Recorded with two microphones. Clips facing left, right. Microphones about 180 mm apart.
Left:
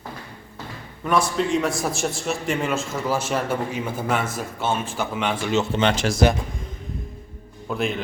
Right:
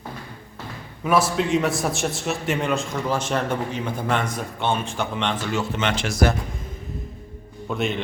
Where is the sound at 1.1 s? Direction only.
5° right (ahead or behind).